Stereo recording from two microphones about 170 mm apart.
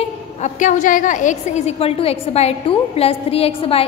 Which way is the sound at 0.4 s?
45° left (ahead or behind).